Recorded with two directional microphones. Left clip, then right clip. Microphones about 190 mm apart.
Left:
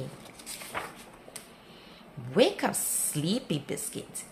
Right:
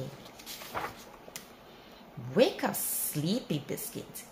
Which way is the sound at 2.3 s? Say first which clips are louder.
Left 2 dB; 25° left (ahead or behind).